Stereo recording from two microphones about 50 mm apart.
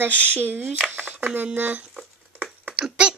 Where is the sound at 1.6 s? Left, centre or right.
Right.